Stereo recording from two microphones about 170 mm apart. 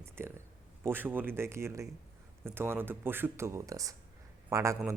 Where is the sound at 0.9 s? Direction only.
10° right (ahead or behind).